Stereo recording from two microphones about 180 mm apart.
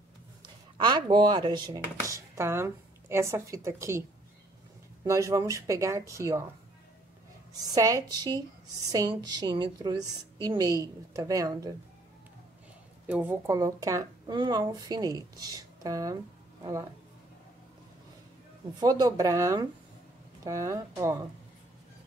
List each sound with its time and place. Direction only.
0.7 s speech: 25° right (ahead or behind)
5.0 s speech: 15° right (ahead or behind)
7.5 s a woman's voice: 20° right (ahead or behind)
13.0 s a woman's voice: 10° right (ahead or behind)
18.8 s a woman's voice: 20° right (ahead or behind)